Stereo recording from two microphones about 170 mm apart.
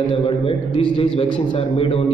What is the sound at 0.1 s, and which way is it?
A man's voice, 30° left (ahead or behind).